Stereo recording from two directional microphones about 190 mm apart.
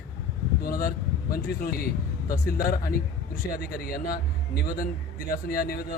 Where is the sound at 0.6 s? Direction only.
50° left (ahead or behind).